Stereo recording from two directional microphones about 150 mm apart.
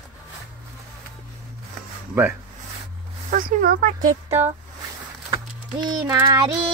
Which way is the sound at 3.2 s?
65° right (ahead or behind).